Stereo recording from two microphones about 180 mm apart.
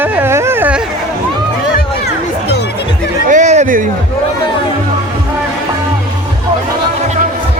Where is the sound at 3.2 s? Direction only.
40° right (ahead or behind).